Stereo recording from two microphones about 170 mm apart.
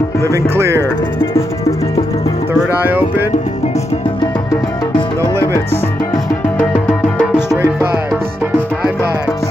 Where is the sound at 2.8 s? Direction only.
10° right (ahead or behind).